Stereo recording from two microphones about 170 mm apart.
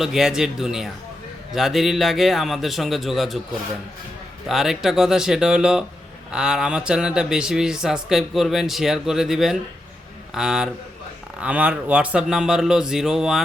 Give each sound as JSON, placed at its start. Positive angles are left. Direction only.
{"t": 0.0, "sound": "speech", "side_deg": 0}
{"t": 4.4, "sound": "speech", "side_deg": 0}